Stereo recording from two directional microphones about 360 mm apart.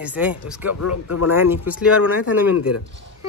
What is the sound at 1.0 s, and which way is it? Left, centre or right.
Speech, left.